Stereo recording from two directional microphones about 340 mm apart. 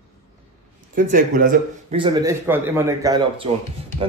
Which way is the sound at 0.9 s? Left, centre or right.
Right.